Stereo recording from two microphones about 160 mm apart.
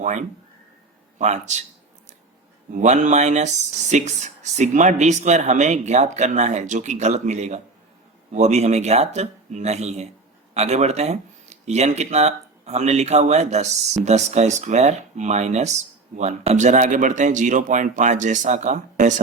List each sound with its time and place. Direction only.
0.0 s speech: 50° right (ahead or behind)
2.7 s speech: 50° right (ahead or behind)